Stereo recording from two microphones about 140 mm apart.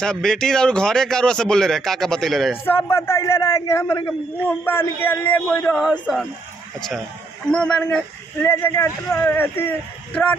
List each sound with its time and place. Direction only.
0.0 s speech: 5° left (ahead or behind)
2.6 s a man's voice: 15° left (ahead or behind)
5.8 s speech: centre (ahead or behind)
7.5 s speech: 5° left (ahead or behind)